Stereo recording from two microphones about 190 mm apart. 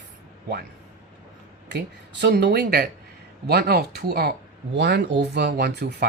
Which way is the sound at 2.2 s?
60° right (ahead or behind).